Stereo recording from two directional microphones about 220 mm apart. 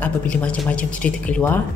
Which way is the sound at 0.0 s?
5° left (ahead or behind).